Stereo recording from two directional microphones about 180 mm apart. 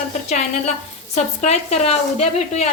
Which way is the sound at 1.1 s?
35° left (ahead or behind).